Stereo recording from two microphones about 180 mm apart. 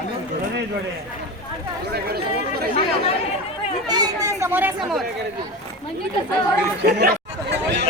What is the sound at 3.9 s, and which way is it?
Chatter, 20° right (ahead or behind).